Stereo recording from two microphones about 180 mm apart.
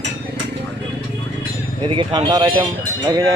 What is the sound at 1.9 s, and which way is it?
Speech, 25° right (ahead or behind).